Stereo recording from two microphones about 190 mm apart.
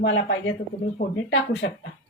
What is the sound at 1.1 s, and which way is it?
Speech, 65° left (ahead or behind).